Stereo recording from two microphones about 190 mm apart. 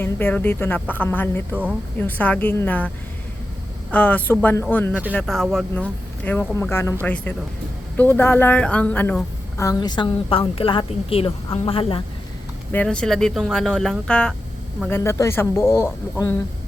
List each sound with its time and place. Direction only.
0.0 s speech: 10° left (ahead or behind)
3.9 s a woman's voice: 10° left (ahead or behind); by 12.0 s 30° left (ahead or behind)
12.7 s speech: 5° left (ahead or behind)